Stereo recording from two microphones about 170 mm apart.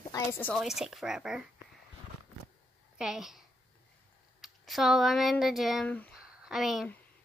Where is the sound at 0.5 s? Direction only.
Centre (ahead or behind).